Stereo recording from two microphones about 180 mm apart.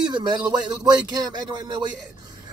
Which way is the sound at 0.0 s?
25° right (ahead or behind).